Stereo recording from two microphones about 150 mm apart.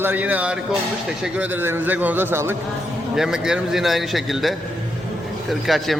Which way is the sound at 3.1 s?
5° right (ahead or behind).